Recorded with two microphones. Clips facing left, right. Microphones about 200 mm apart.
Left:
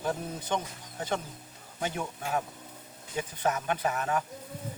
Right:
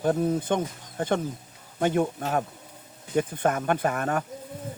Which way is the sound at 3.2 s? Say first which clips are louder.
Right 6 dB; 55° right (ahead or behind).